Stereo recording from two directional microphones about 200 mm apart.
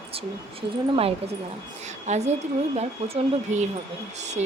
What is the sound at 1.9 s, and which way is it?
Speech, 35° right (ahead or behind).